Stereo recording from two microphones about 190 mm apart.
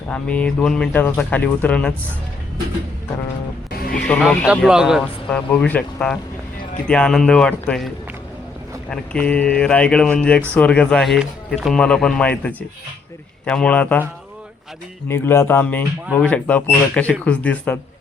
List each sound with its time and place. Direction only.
0.1 s speech: 5° left (ahead or behind)
3.7 s music: 50° left (ahead or behind)
3.9 s speech: 5° left (ahead or behind)
15.0 s speech: 10° left (ahead or behind)